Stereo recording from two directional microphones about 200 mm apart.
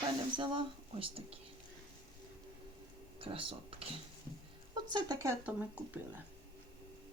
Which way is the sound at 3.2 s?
25° right (ahead or behind).